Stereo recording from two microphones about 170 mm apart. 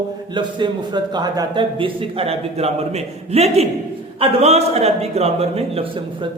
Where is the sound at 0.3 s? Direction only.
25° right (ahead or behind).